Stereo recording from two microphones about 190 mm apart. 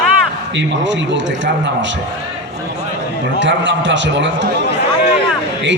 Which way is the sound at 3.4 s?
75° right (ahead or behind).